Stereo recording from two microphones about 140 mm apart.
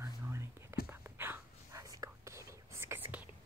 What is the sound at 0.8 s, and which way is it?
Whispering, 15° right (ahead or behind).